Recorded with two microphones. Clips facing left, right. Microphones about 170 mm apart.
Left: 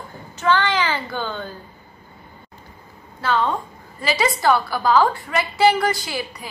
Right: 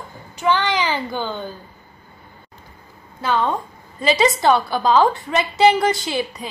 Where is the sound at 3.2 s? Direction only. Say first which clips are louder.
Right 1 dB; 15° right (ahead or behind).